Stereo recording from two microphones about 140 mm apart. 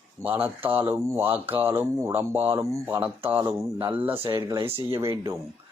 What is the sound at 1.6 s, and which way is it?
Speech, 15° right (ahead or behind).